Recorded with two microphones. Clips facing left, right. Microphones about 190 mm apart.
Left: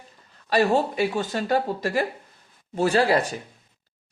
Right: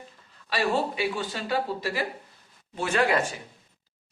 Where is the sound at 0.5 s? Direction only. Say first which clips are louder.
Left 6 dB; 40° left (ahead or behind).